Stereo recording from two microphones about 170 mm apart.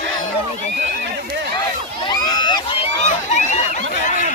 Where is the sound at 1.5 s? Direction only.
25° left (ahead or behind); by 4.2 s 45° left (ahead or behind).